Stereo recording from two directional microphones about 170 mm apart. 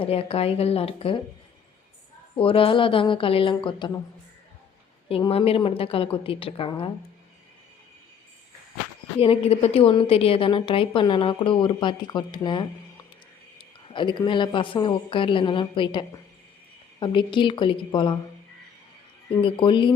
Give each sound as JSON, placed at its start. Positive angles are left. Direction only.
{"t": 0.0, "sound": "a woman's voice", "side_deg": 35}
{"t": 2.3, "sound": "a woman's voice", "side_deg": 30}
{"t": 5.0, "sound": "a woman's voice", "side_deg": 35}
{"t": 9.1, "sound": "a woman's voice", "side_deg": 35}
{"t": 19.4, "sound": "a woman's voice", "side_deg": 30}